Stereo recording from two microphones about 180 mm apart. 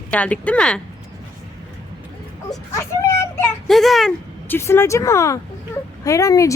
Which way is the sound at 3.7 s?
Centre (ahead or behind).